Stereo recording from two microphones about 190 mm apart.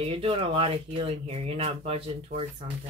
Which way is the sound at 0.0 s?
30° right (ahead or behind).